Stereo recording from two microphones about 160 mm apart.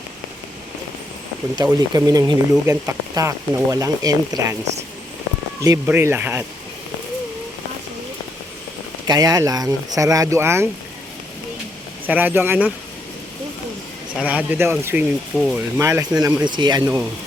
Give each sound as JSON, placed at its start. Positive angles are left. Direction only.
{"t": 1.9, "sound": "speech", "side_deg": -20}
{"t": 5.6, "sound": "speech", "side_deg": -15}
{"t": 9.0, "sound": "speech", "side_deg": -25}
{"t": 12.0, "sound": "speech", "side_deg": -10}
{"t": 14.2, "sound": "speech", "side_deg": -10}
{"t": 15.8, "sound": "speech", "side_deg": -20}